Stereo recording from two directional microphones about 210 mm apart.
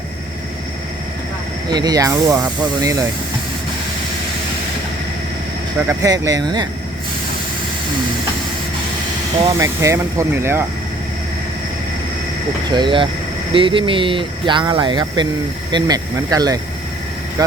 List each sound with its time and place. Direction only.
1.7 s speech: 20° right (ahead or behind)
5.9 s speech: 15° right (ahead or behind)
9.5 s speech: 15° right (ahead or behind)
12.7 s speech: 20° right (ahead or behind)